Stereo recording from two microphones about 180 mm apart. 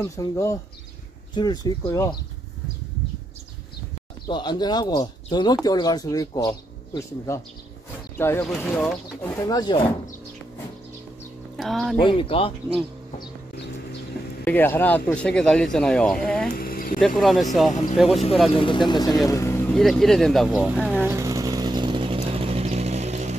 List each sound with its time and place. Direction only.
0.0 s speech: 15° left (ahead or behind)
4.3 s speech: 25° left (ahead or behind)
8.5 s speech: centre (ahead or behind)
9.4 s speech: 20° left (ahead or behind)
11.5 s speech: centre (ahead or behind)
12.0 s speech: 30° left (ahead or behind)
14.4 s speech: 10° left (ahead or behind)
16.5 s a sound: 55° left (ahead or behind)
17.2 s speech: centre (ahead or behind)
18.5 s speech: 30° left (ahead or behind)
19.7 s speech: centre (ahead or behind)
20.9 s vehicle: 10° right (ahead or behind); by 23.3 s 40° right (ahead or behind)